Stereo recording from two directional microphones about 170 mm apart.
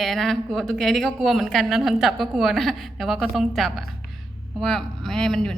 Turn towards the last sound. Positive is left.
turn(degrees=5)  # may be behind; listen again after turning